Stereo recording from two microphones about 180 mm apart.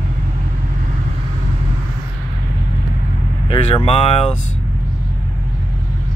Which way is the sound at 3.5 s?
30° left (ahead or behind).